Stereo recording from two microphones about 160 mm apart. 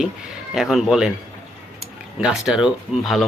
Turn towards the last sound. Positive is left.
turn(degrees=0)  # may be behind; listen again after turning